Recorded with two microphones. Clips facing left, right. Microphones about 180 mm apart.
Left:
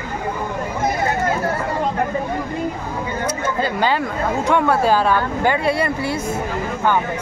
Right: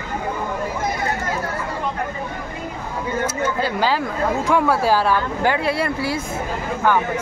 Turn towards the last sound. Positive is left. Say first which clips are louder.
# left 2 dB
turn(degrees=0)  # may be behind; listen again after turning